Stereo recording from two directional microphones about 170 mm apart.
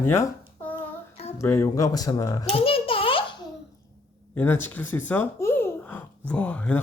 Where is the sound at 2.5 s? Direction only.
35° left (ahead or behind).